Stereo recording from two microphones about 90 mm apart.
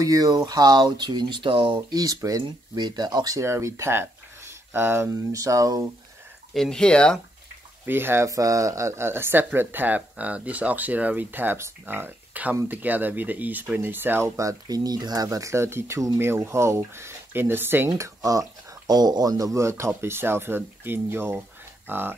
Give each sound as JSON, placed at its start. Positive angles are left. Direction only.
{"t": 0.0, "sound": "speech", "side_deg": -40}
{"t": 1.9, "sound": "speech", "side_deg": -45}
{"t": 3.3, "sound": "speech", "side_deg": -30}
{"t": 5.3, "sound": "speech", "side_deg": -40}
{"t": 6.5, "sound": "speech", "side_deg": 5}
{"t": 7.8, "sound": "speech", "side_deg": -25}
{"t": 8.3, "sound": "speech", "side_deg": -40}